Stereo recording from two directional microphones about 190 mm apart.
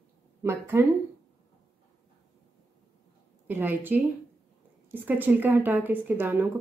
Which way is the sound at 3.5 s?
10° right (ahead or behind).